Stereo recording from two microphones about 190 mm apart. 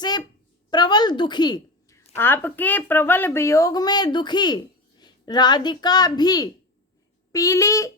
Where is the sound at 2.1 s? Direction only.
10° left (ahead or behind).